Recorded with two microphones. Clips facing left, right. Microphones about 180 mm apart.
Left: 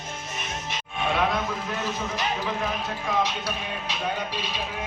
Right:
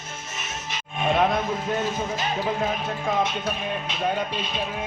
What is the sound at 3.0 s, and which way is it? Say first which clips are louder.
Music: right 1 dB; 50° right (ahead or behind).